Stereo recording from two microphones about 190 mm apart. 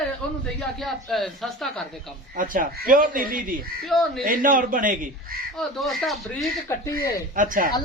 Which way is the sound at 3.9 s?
Centre (ahead or behind).